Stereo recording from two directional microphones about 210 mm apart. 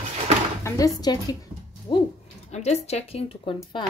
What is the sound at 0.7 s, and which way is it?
Speech, 15° left (ahead or behind).